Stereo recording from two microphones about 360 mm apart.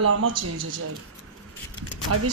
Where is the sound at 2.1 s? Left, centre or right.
Right.